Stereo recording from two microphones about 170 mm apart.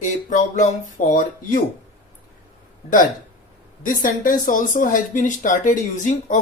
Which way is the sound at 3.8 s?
55° left (ahead or behind).